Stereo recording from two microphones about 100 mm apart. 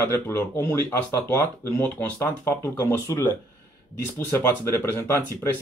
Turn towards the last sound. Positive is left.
turn(degrees=25)  # may be behind; listen again after turning